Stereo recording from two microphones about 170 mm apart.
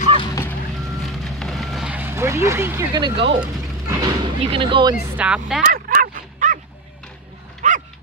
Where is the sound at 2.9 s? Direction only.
25° right (ahead or behind).